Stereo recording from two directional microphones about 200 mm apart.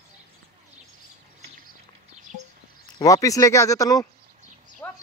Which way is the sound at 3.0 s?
15° left (ahead or behind).